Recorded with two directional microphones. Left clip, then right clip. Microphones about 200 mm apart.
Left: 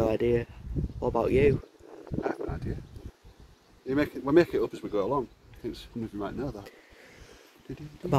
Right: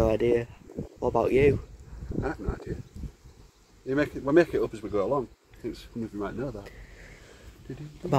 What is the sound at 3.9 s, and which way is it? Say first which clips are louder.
Speech: right 1 dB; 50° left (ahead or behind).